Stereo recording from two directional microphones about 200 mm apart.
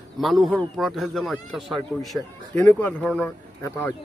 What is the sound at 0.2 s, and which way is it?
A man's voice, centre (ahead or behind).